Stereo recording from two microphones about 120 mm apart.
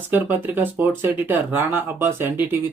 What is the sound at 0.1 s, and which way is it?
Speech, 15° right (ahead or behind).